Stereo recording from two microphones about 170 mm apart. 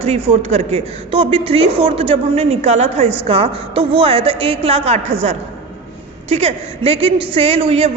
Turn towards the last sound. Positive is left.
turn(degrees=-35)  # may be behind; listen again after turning